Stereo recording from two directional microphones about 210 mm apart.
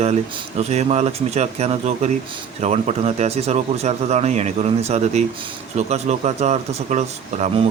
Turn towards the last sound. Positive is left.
turn(degrees=-30)  # may be behind; listen again after turning